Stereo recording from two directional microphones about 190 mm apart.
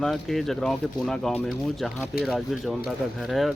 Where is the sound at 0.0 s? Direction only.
Centre (ahead or behind).